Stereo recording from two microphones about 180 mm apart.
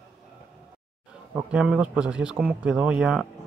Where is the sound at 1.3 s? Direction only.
5° right (ahead or behind).